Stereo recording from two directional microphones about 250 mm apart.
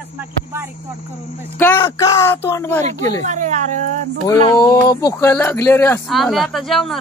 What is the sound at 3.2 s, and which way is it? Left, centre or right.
Speech, right.